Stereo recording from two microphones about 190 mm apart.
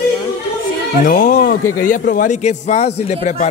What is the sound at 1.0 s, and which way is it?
A man's voice, 50° left (ahead or behind).